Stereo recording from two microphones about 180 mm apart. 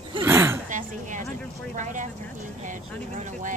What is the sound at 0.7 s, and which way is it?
Speech, 45° right (ahead or behind).